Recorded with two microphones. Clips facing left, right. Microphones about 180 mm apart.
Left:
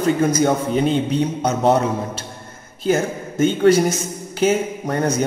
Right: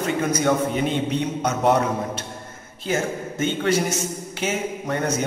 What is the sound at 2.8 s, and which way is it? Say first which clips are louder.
A man's voice: left 5 dB; 40° left (ahead or behind).